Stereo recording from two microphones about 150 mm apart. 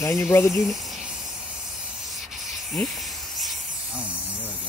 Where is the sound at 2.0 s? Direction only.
Centre (ahead or behind).